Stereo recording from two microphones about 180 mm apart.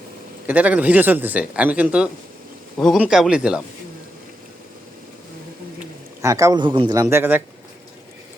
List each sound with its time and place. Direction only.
0.4 s a man's voice: 10° right (ahead or behind)
6.2 s speech: 20° right (ahead or behind)